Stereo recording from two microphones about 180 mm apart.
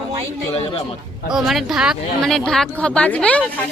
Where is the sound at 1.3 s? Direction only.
Centre (ahead or behind).